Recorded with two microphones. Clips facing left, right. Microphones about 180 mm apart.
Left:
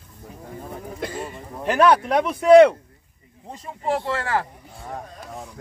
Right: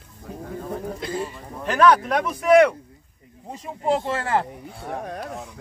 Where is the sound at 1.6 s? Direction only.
25° left (ahead or behind).